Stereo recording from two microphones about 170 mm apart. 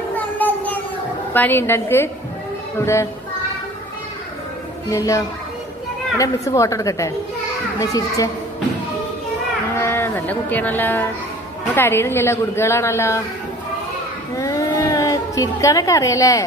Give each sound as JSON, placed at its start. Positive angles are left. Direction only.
{"t": 1.3, "sound": "a woman's voice", "side_deg": 10}
{"t": 4.8, "sound": "a woman's voice", "side_deg": 20}
{"t": 9.8, "sound": "a woman's voice", "side_deg": 15}
{"t": 14.3, "sound": "a sound", "side_deg": 20}